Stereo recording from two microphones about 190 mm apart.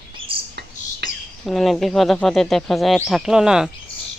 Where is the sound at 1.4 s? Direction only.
Centre (ahead or behind).